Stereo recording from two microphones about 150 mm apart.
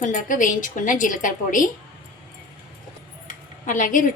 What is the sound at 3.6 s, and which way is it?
Speech, 60° left (ahead or behind).